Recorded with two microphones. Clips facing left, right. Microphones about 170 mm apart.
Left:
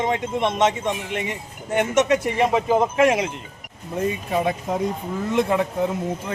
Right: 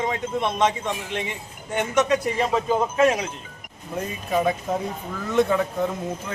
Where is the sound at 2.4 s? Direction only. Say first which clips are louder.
Left 3 dB; 10° left (ahead or behind).